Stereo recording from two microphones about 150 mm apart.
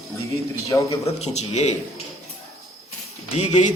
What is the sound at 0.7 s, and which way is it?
Speech, 20° left (ahead or behind).